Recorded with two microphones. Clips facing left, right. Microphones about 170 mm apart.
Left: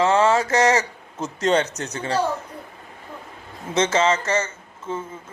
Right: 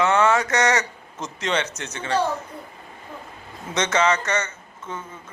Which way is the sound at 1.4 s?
40° left (ahead or behind).